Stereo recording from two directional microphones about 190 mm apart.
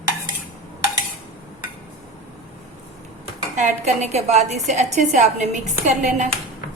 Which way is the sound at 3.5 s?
40° right (ahead or behind).